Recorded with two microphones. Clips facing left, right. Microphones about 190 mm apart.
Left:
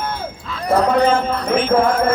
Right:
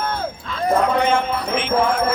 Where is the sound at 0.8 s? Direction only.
35° left (ahead or behind).